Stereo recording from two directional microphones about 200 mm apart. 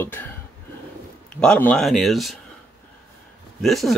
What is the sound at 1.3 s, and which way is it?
Speech, 5° left (ahead or behind).